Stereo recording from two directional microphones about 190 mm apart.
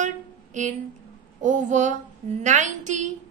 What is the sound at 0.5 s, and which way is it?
A woman's voice, 40° right (ahead or behind).